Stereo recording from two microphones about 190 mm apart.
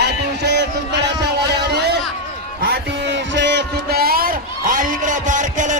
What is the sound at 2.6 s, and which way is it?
Music, 60° right (ahead or behind).